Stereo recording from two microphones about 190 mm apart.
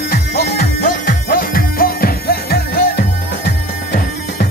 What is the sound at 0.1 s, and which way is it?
Music, 55° left (ahead or behind).